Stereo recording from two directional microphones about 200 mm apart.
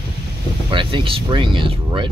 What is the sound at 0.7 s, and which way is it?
Speech, 25° right (ahead or behind).